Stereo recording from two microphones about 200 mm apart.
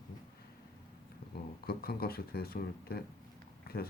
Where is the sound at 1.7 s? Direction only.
50° left (ahead or behind).